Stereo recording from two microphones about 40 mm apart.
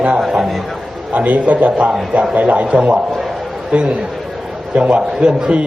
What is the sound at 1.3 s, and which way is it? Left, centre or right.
A man's voice, right.